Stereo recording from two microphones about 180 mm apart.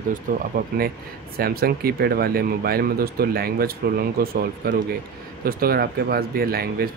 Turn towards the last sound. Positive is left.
turn(degrees=-55)  # may be behind; listen again after turning